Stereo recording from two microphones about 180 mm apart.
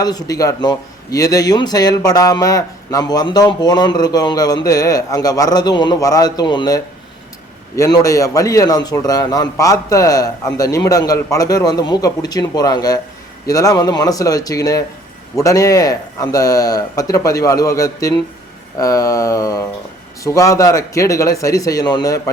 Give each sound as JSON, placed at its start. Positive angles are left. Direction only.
{"t": 0.0, "sound": "a man's voice", "side_deg": 20}